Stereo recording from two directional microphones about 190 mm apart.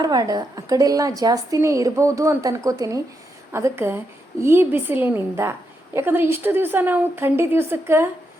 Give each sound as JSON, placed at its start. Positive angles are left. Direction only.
{"t": 0.0, "sound": "a woman's voice", "side_deg": -20}